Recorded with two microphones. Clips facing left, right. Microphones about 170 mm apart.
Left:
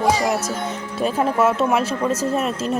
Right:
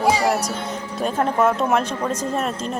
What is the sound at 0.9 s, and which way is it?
A woman's voice, 5° left (ahead or behind).